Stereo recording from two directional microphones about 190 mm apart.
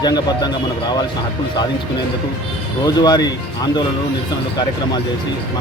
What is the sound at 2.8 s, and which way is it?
Speech, 20° left (ahead or behind).